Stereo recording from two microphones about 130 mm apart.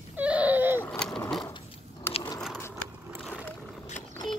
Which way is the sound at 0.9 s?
5° left (ahead or behind).